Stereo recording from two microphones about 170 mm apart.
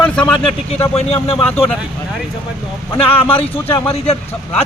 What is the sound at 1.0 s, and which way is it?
Speech, 35° left (ahead or behind).